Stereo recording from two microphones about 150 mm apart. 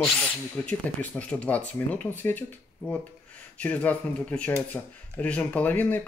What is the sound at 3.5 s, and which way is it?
Speech, 10° left (ahead or behind).